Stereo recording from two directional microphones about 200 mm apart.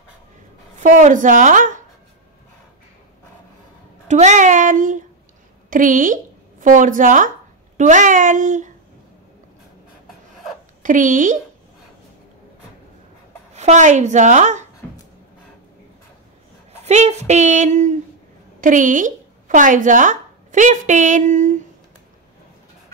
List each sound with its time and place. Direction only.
0.7 s speech: 40° right (ahead or behind)
4.1 s a woman's voice: 35° right (ahead or behind)
10.8 s speech: 40° right (ahead or behind)
13.6 s speech: 35° right (ahead or behind)
16.8 s speech: 35° right (ahead or behind)